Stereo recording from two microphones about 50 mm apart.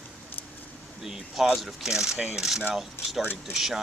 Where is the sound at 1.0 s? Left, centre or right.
Centre.